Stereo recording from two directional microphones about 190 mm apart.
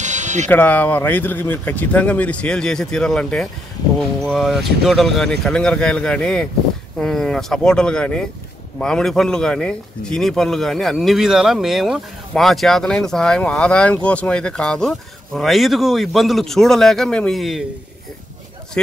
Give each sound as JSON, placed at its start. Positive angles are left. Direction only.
{"t": 0.0, "sound": "music", "side_deg": -40}
{"t": 0.5, "sound": "speech", "side_deg": 10}